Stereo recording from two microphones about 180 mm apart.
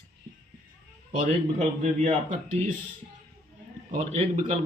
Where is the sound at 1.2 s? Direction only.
40° right (ahead or behind).